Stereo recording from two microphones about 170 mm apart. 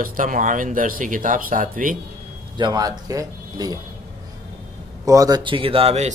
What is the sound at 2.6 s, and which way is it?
Speech, 25° right (ahead or behind).